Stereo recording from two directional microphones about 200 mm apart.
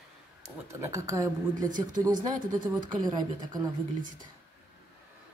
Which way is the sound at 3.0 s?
20° right (ahead or behind).